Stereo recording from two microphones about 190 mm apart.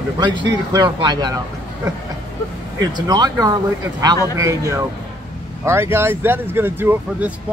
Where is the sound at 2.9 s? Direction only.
20° right (ahead or behind).